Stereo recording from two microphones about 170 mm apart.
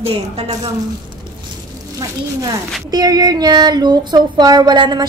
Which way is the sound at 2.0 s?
20° right (ahead or behind).